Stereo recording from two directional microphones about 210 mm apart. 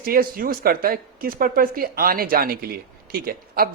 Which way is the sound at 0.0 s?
45° right (ahead or behind).